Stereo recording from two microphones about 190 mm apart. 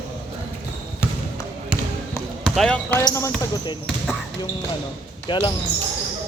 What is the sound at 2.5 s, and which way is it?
Speech, 5° left (ahead or behind).